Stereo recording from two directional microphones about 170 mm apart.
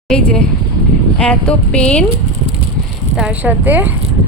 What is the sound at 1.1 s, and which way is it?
Speech, 5° left (ahead or behind).